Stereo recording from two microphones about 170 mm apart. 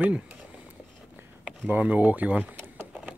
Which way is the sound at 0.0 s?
10° right (ahead or behind).